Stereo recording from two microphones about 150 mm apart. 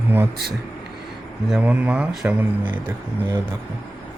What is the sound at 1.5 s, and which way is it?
Speech, 5° right (ahead or behind).